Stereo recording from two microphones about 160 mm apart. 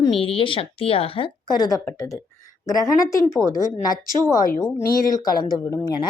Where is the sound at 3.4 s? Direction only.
25° right (ahead or behind).